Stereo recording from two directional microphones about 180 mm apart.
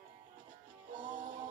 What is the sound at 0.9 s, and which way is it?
Music, 45° right (ahead or behind).